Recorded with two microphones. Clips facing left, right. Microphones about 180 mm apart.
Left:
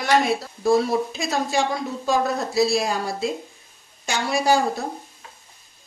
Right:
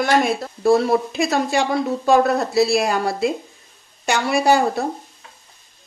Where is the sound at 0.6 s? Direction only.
65° right (ahead or behind).